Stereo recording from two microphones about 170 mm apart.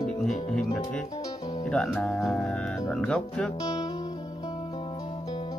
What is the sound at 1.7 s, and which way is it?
Speech, centre (ahead or behind).